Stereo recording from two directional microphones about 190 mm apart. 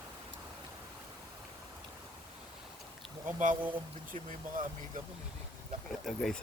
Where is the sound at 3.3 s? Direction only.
45° right (ahead or behind).